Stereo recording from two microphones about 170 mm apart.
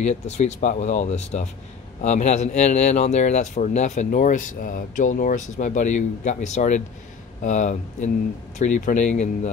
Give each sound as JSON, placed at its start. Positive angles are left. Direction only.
{"t": 0.0, "sound": "speech", "side_deg": 40}